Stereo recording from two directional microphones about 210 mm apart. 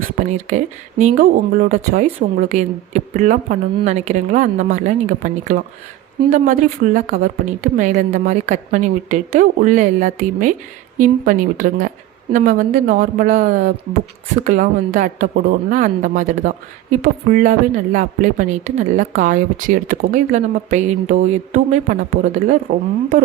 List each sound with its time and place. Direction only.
0.0 s speech: 35° right (ahead or behind)